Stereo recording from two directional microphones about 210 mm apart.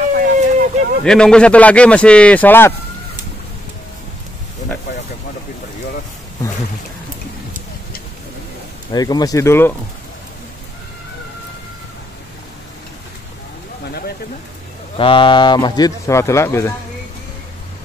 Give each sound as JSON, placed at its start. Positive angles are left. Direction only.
{"t": 0.2, "sound": "a sound", "side_deg": -40}
{"t": 1.0, "sound": "a man's voice", "side_deg": 5}
{"t": 8.9, "sound": "speech", "side_deg": 20}
{"t": 15.0, "sound": "speech", "side_deg": 25}